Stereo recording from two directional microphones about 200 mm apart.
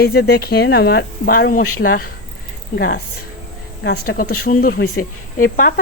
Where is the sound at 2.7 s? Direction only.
55° left (ahead or behind).